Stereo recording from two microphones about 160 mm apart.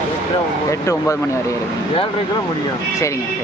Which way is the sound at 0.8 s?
20° left (ahead or behind).